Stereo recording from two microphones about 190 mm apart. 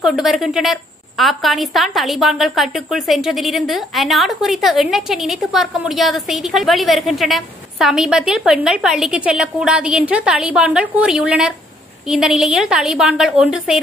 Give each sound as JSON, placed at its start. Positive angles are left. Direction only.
{"t": 0.0, "sound": "a woman's voice", "side_deg": 0}